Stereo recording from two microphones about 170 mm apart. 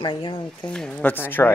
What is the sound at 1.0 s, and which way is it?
Speech, 10° left (ahead or behind).